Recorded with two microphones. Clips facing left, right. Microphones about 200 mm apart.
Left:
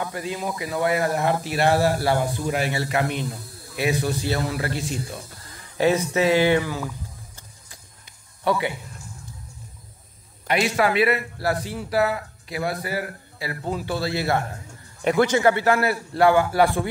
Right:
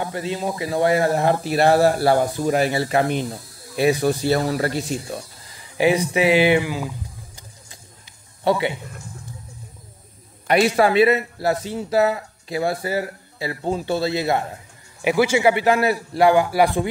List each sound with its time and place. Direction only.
0.0 s speech: 25° right (ahead or behind)
4.0 s speech: 45° right (ahead or behind)
5.8 s a man's voice: 15° right (ahead or behind)
8.5 s a man's voice: 25° right (ahead or behind)
10.4 s a man's voice: 35° right (ahead or behind); by 14.4 s 20° right (ahead or behind)
15.0 s a man's voice: 5° right (ahead or behind)